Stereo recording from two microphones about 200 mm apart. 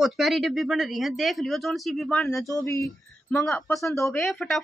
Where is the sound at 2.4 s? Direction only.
15° left (ahead or behind).